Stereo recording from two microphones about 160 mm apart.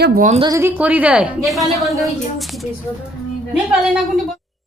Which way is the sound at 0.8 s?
10° right (ahead or behind).